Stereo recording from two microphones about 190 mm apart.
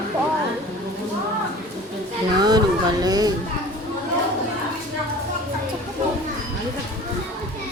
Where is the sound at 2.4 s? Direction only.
20° right (ahead or behind).